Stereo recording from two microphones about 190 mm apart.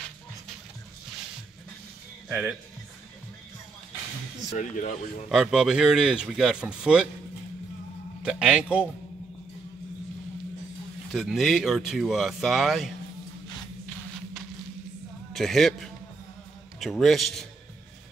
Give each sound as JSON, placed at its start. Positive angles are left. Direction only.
{"t": 2.2, "sound": "speech", "side_deg": -5}
{"t": 4.6, "sound": "speech", "side_deg": 40}
{"t": 5.3, "sound": "speech", "side_deg": 0}
{"t": 8.2, "sound": "speech", "side_deg": -5}
{"t": 11.1, "sound": "speech", "side_deg": 0}
{"t": 15.3, "sound": "a man's voice", "side_deg": 0}